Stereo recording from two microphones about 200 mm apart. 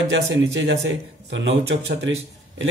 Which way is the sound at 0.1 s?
65° right (ahead or behind).